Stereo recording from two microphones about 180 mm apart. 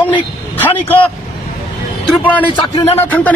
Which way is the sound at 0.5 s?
10° left (ahead or behind).